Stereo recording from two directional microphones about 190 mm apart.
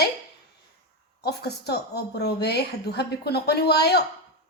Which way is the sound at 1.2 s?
60° left (ahead or behind).